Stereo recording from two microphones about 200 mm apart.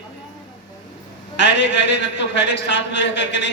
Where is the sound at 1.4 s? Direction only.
65° left (ahead or behind).